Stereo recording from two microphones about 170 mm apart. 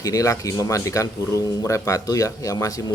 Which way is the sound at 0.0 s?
20° left (ahead or behind).